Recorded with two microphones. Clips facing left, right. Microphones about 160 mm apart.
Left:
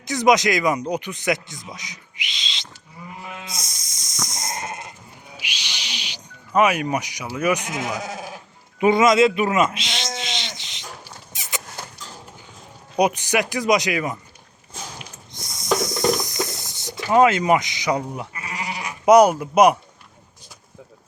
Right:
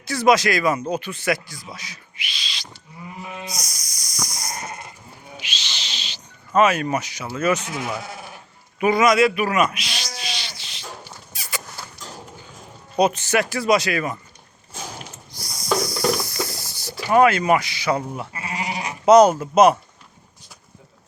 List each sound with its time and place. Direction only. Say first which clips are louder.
0.0 s speech: even; 20° left (ahead or behind)
3.4 s sheep: right 2 dB; 25° left (ahead or behind)
5.4 s owl: left 1 dB; 15° left (ahead or behind)
8.8 s bleat: left 1 dB; 25° left (ahead or behind)
11.3 s squeak: left 1 dB; 20° left (ahead or behind)
13.0 s speech: right 1 dB; 15° left (ahead or behind)
15.3 s a sound: left 1 dB; 20° left (ahead or behind)
17.1 s speech: even; 20° left (ahead or behind)
18.3 s goat: right 3 dB; 30° right (ahead or behind)
19.0 s speech: right 1 dB; 10° left (ahead or behind)